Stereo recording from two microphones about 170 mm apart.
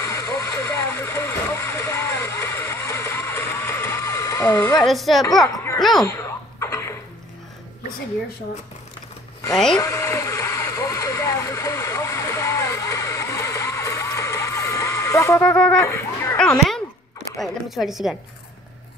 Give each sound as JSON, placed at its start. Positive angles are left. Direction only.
{"t": 0.0, "sound": "vehicle", "side_deg": 20}
{"t": 4.8, "sound": "speech", "side_deg": 0}
{"t": 5.8, "sound": "a sound", "side_deg": 0}
{"t": 6.0, "sound": "cough", "side_deg": 15}
{"t": 9.5, "sound": "speech", "side_deg": 5}
{"t": 9.8, "sound": "vehicle", "side_deg": 20}
{"t": 15.4, "sound": "speech", "side_deg": 5}
{"t": 15.8, "sound": "a sound", "side_deg": 15}
{"t": 16.3, "sound": "a sound", "side_deg": 5}
{"t": 17.4, "sound": "speech", "side_deg": 0}